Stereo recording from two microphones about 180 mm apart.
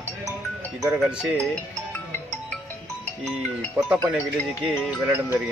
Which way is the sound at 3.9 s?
5° right (ahead or behind).